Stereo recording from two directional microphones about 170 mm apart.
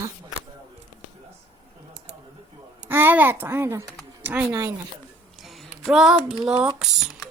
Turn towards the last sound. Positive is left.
turn(degrees=0)  # may be behind; listen again after turning